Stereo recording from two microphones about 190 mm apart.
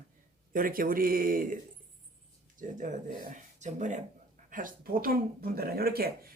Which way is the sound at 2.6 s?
45° right (ahead or behind).